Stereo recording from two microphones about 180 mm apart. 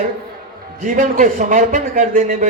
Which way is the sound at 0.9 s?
45° right (ahead or behind).